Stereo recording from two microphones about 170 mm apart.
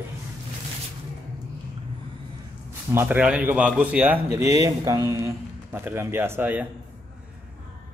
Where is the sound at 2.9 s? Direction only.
10° right (ahead or behind).